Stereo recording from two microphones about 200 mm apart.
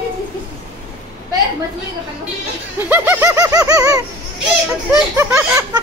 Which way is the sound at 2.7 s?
10° right (ahead or behind).